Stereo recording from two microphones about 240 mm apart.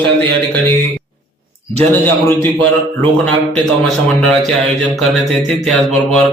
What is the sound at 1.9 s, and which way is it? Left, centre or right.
Speech, centre.